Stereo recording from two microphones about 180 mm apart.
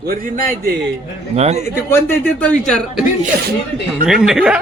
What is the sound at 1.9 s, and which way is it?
Speech, 10° left (ahead or behind).